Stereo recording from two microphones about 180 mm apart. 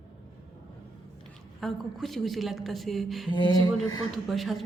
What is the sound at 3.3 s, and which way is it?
Music, 25° left (ahead or behind).